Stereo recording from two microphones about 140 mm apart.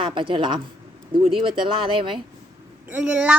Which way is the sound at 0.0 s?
35° right (ahead or behind).